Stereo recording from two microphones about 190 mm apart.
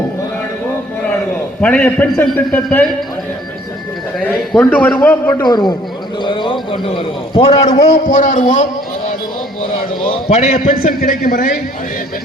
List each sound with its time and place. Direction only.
1.6 s a man's voice: 5° left (ahead or behind)
4.7 s a man's voice: 5° left (ahead or behind)
5.4 s a man's voice: 20° left (ahead or behind); by 8.6 s 40° left (ahead or behind)
10.1 s a man's voice: 35° left (ahead or behind)